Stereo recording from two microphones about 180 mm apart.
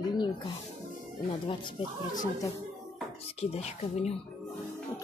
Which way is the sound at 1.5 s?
30° left (ahead or behind).